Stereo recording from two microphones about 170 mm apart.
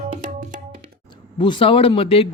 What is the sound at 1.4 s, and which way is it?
Speech, 30° left (ahead or behind).